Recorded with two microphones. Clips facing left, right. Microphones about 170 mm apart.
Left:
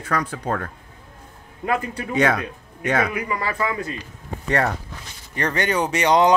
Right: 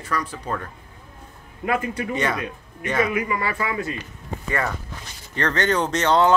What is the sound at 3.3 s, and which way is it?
Speech, 35° left (ahead or behind).